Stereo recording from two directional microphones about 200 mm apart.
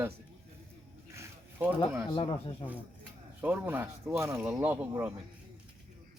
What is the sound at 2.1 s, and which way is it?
Speech, 30° left (ahead or behind).